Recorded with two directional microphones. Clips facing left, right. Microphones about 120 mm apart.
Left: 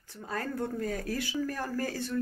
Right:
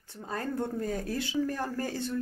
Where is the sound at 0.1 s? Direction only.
25° right (ahead or behind).